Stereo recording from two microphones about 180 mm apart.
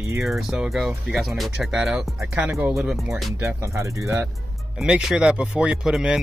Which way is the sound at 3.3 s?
15° right (ahead or behind).